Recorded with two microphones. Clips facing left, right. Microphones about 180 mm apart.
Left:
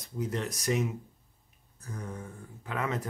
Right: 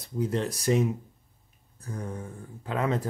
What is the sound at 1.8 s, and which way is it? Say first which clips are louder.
Mantra: right 4 dB; 30° right (ahead or behind).